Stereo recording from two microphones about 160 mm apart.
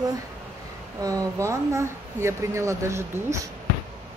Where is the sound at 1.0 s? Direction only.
20° right (ahead or behind).